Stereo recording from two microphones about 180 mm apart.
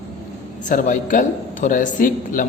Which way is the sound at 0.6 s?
45° left (ahead or behind).